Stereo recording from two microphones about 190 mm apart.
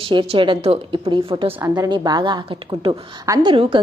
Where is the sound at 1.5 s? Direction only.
15° right (ahead or behind).